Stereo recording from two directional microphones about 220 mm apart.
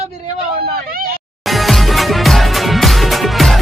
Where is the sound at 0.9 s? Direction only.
40° right (ahead or behind).